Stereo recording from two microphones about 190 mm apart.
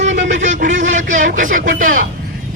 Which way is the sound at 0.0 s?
40° right (ahead or behind).